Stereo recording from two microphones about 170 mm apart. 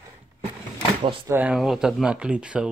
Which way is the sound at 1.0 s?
30° right (ahead or behind).